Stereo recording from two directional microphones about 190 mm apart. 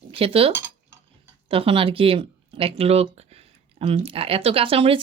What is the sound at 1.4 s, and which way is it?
A woman's voice, 30° right (ahead or behind).